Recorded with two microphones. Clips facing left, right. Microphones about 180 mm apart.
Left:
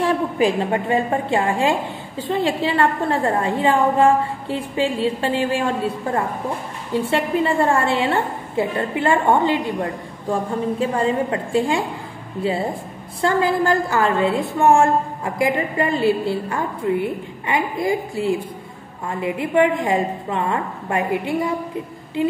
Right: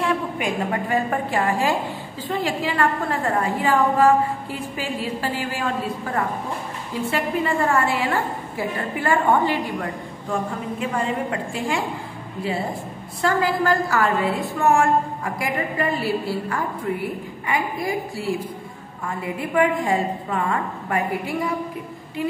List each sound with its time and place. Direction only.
0.0 s a woman's voice: 35° left (ahead or behind)
7.1 s a woman's voice: 30° left (ahead or behind)
13.2 s a woman's voice: 25° left (ahead or behind)